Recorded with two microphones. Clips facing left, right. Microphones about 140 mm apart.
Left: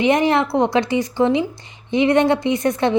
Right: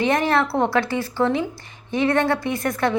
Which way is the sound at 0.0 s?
20° left (ahead or behind).